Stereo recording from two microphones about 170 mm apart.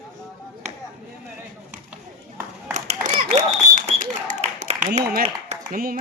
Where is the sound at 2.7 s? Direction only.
45° right (ahead or behind).